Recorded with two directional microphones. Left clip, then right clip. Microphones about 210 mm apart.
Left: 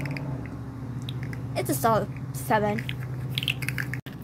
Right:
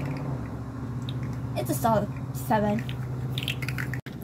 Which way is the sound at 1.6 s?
40° left (ahead or behind).